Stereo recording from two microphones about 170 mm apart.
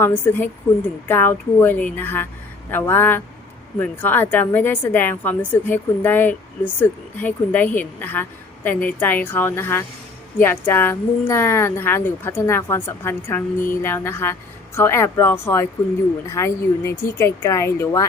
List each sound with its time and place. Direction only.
0.0 s a woman's voice: 10° left (ahead or behind)